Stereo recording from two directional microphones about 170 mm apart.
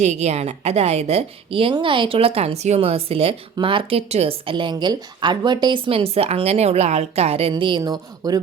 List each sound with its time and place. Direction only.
0.0 s a woman's voice: 40° right (ahead or behind)
7.5 s speech: 25° right (ahead or behind)